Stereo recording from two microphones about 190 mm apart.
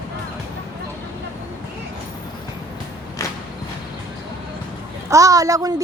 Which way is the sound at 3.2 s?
15° left (ahead or behind).